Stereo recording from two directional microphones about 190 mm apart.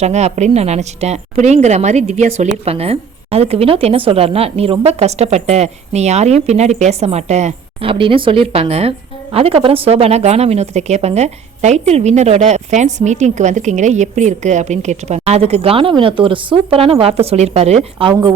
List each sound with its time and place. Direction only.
0.0 s a woman's voice: 35° right (ahead or behind)